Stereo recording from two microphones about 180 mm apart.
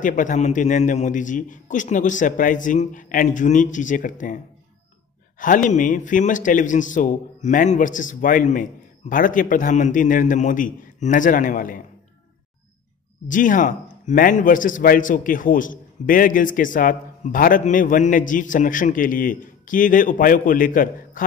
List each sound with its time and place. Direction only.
0.0 s a man's voice: 45° left (ahead or behind)
5.4 s a man's voice: 45° left (ahead or behind)
13.3 s a man's voice: 45° left (ahead or behind)